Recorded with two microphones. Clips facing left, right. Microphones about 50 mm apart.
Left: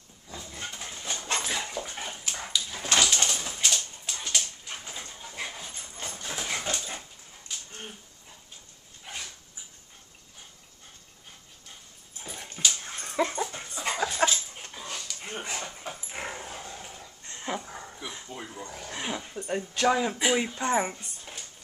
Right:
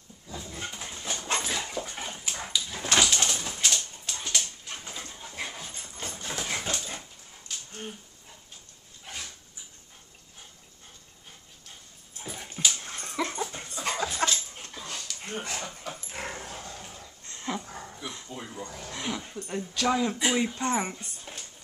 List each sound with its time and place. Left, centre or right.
0.3 s dog: centre
9.0 s dog: centre
12.2 s dog: centre
19.3 s a sound: left
19.9 s speech: centre